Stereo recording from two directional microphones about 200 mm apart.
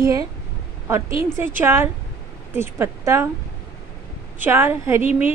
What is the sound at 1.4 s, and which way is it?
A woman's voice, 10° right (ahead or behind).